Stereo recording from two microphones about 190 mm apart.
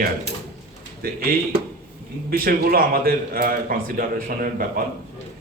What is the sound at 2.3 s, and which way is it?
Speech, 50° right (ahead or behind).